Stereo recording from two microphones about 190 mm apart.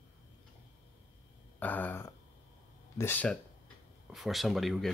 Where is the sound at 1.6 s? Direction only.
10° left (ahead or behind).